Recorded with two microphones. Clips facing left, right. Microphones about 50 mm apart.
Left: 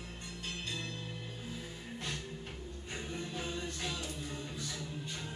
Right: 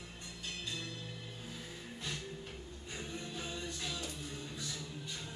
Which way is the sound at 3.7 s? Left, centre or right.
Left.